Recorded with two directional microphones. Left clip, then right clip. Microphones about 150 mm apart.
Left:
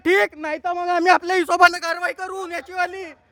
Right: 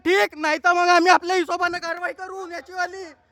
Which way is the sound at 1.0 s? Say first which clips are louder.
Left 1 dB; 10° right (ahead or behind).